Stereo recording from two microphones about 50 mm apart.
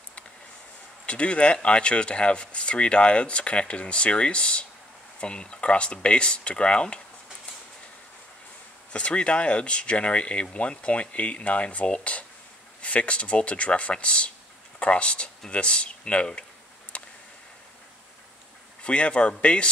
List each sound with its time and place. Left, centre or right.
1.0 s speech: left
8.9 s speech: left
16.9 s a sound: left
18.8 s speech: left